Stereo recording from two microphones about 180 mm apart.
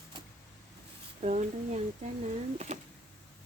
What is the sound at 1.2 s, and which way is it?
Speech, 40° right (ahead or behind).